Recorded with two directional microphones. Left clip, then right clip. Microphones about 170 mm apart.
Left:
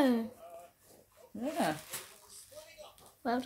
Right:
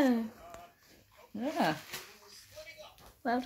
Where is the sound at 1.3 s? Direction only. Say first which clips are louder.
Right 2 dB; 40° right (ahead or behind).